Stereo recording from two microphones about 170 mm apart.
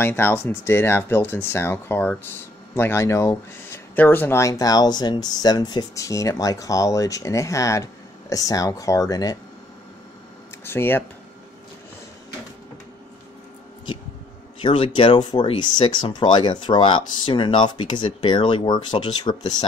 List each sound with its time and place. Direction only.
0.0 s speech: 15° left (ahead or behind)
10.6 s speech: 15° left (ahead or behind)
14.6 s speech: 30° left (ahead or behind)